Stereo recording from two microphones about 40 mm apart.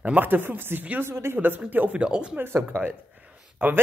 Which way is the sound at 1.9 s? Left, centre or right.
Right.